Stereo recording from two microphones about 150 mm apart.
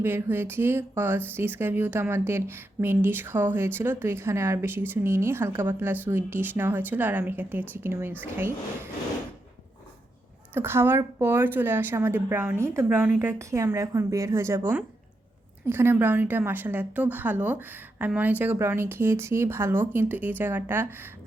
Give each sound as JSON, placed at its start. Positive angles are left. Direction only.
{"t": 0.0, "sound": "a woman's voice", "side_deg": -15}
{"t": 10.5, "sound": "a woman's voice", "side_deg": -15}